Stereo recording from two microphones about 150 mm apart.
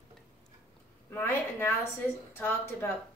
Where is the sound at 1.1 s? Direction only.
15° left (ahead or behind).